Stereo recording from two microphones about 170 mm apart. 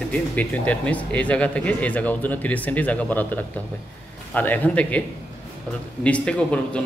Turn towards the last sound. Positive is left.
turn(degrees=5)  # may be behind; listen again after turning